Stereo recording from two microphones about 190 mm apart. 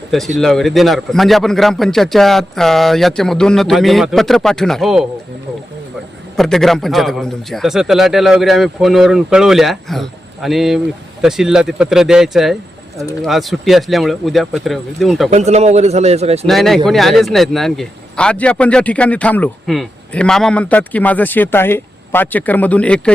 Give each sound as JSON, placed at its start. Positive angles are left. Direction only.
{"t": 0.3, "sound": "a man's voice", "side_deg": 0}
{"t": 6.3, "sound": "a man's voice", "side_deg": 0}
{"t": 15.3, "sound": "a man's voice", "side_deg": -35}
{"t": 16.5, "sound": "speech", "side_deg": 0}